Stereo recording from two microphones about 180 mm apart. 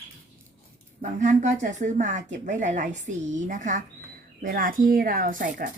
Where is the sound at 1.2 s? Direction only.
40° right (ahead or behind).